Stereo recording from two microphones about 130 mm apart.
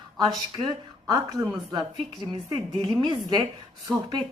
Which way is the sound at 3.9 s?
5° right (ahead or behind).